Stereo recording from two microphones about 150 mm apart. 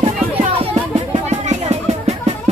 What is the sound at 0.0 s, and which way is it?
Music, 40° right (ahead or behind).